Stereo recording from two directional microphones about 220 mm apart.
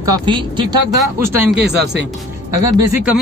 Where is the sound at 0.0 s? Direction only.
20° right (ahead or behind).